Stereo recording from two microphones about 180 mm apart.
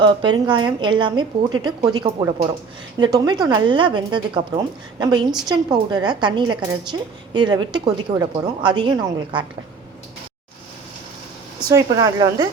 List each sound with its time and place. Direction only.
0.0 s a woman's voice: 25° right (ahead or behind)
11.7 s a woman's voice: 20° right (ahead or behind)